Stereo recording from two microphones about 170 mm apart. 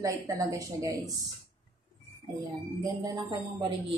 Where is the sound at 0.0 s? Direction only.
20° right (ahead or behind).